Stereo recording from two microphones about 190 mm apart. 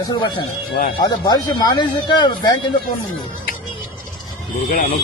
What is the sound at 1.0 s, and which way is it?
Speech, 20° left (ahead or behind).